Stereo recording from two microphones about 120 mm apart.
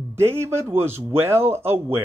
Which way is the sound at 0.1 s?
20° right (ahead or behind).